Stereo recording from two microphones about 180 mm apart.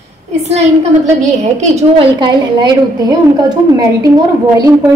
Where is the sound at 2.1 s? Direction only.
25° right (ahead or behind).